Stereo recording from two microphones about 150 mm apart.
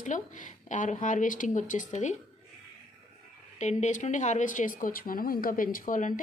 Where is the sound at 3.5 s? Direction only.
50° left (ahead or behind).